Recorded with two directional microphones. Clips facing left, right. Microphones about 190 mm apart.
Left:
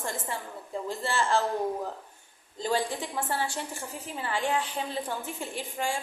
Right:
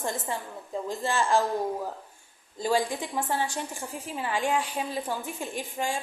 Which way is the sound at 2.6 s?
15° right (ahead or behind).